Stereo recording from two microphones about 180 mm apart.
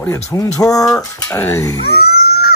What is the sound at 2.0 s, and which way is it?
Music, 60° left (ahead or behind).